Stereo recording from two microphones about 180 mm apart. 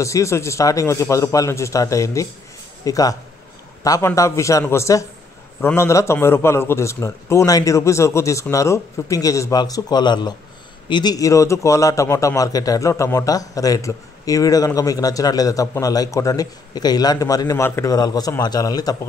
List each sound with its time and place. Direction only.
0.0 s a man's voice: 15° left (ahead or behind)